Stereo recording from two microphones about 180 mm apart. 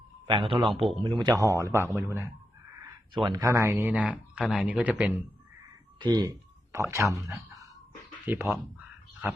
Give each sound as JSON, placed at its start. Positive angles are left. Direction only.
{"t": 0.3, "sound": "speech", "side_deg": -30}
{"t": 3.2, "sound": "speech", "side_deg": -20}
{"t": 6.0, "sound": "speech", "side_deg": -25}